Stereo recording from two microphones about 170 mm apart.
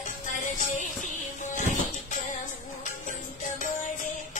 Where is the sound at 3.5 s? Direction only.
50° left (ahead or behind).